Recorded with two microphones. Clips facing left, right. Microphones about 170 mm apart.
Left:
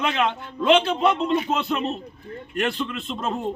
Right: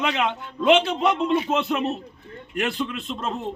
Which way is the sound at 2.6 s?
5° right (ahead or behind).